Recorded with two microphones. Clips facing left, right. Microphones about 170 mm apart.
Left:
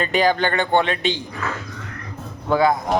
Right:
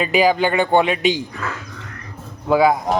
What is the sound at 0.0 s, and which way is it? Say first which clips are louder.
Speech: right 3 dB; 5° right (ahead or behind).